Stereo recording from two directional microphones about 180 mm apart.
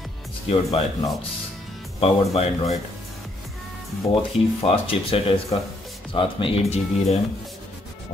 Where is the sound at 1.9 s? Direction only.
35° left (ahead or behind).